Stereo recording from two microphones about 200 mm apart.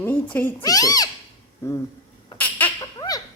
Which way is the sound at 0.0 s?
10° left (ahead or behind).